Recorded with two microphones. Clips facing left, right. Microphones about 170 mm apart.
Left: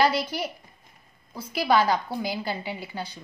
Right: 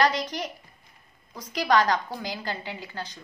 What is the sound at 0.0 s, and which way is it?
A woman's voice, 10° left (ahead or behind).